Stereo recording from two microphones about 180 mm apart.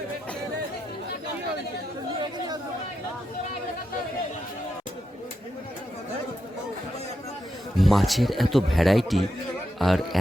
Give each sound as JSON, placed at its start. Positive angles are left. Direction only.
{"t": 2.1, "sound": "chatter", "side_deg": -25}
{"t": 7.8, "sound": "speech", "side_deg": 0}